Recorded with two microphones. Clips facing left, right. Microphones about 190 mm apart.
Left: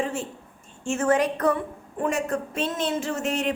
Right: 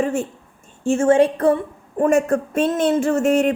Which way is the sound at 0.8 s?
30° right (ahead or behind).